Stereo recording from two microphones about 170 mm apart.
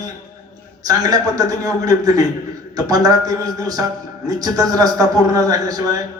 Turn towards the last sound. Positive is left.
turn(degrees=-20)  # may be behind; listen again after turning